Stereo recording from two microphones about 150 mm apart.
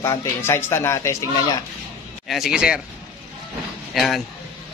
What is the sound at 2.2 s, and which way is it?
Speech, centre (ahead or behind).